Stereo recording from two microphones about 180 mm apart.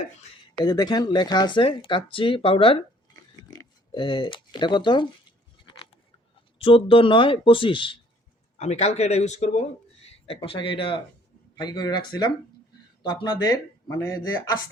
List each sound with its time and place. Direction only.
0.5 s speech: 20° left (ahead or behind)
5.6 s a sound: 30° left (ahead or behind)
6.6 s speech: 30° left (ahead or behind)
8.5 s speech: 40° left (ahead or behind); by 14.5 s 20° left (ahead or behind)